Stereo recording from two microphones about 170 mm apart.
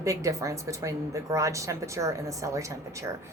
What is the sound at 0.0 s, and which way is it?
A woman's voice, 20° right (ahead or behind).